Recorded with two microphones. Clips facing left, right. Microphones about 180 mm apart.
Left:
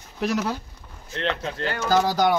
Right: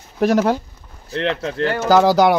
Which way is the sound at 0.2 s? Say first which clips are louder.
Right 9 dB; 55° right (ahead or behind).